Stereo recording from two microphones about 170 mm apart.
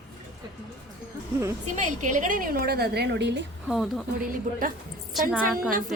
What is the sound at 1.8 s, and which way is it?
A woman's voice, 45° right (ahead or behind).